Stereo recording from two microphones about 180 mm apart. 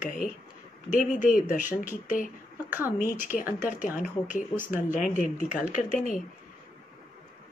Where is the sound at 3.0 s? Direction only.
45° left (ahead or behind).